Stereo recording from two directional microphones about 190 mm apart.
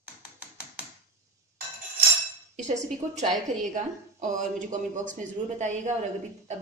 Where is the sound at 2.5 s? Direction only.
40° right (ahead or behind).